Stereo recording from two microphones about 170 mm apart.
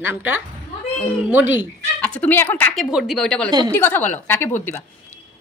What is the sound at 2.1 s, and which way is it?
Speech, 10° left (ahead or behind).